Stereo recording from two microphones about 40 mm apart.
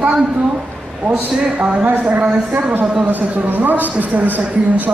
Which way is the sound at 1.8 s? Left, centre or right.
Right.